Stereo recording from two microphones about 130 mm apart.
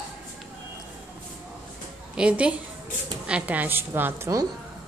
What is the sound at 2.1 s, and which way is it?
A woman's voice, 10° right (ahead or behind).